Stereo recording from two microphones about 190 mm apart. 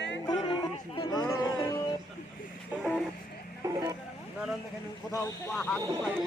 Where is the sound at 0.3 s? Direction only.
25° left (ahead or behind).